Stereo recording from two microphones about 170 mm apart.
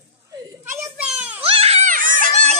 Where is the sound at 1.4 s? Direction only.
35° right (ahead or behind).